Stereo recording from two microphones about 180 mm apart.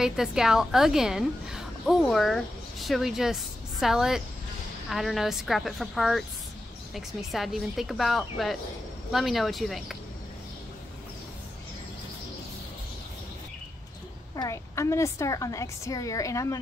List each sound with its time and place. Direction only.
0.0 s a woman's voice: 5° right (ahead or behind)
14.3 s a woman's voice: 20° left (ahead or behind)